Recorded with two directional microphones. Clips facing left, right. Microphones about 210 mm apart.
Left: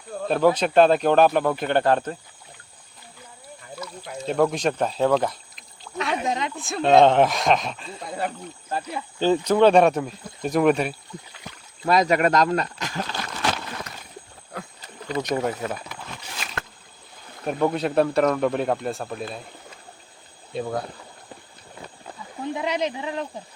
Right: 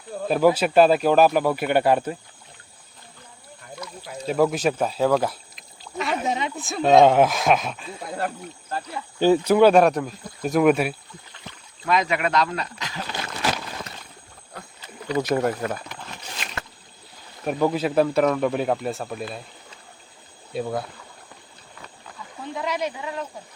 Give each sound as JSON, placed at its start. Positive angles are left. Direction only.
{"t": 0.1, "sound": "speech", "side_deg": -5}
{"t": 3.8, "sound": "speech", "side_deg": 0}
{"t": 8.7, "sound": "speech", "side_deg": 15}
{"t": 9.1, "sound": "speech", "side_deg": -10}
{"t": 11.9, "sound": "speech", "side_deg": 40}
{"t": 15.1, "sound": "speech", "side_deg": -5}
{"t": 17.4, "sound": "speech", "side_deg": -5}
{"t": 20.5, "sound": "speech", "side_deg": -5}
{"t": 22.5, "sound": "speech", "side_deg": 25}